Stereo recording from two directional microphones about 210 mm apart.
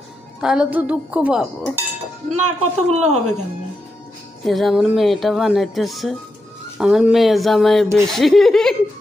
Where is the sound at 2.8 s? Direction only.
35° right (ahead or behind).